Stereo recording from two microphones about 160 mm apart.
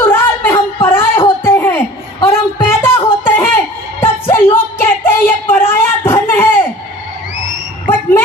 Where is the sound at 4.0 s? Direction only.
15° left (ahead or behind).